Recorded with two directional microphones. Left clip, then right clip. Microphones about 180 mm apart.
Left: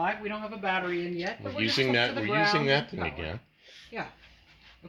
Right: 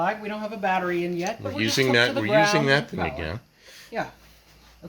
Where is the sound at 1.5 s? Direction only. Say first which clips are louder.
Right 5 dB; centre (ahead or behind).